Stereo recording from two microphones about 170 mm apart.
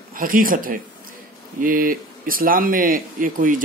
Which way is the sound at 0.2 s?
55° right (ahead or behind).